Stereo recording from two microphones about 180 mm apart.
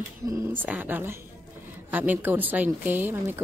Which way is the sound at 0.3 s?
10° right (ahead or behind).